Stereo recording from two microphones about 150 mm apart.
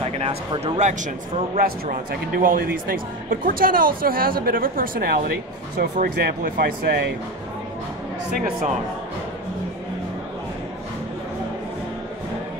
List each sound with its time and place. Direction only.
0.0 s speech: 40° right (ahead or behind)
1.6 s speech: 70° right (ahead or behind)
5.8 s speech: 90° right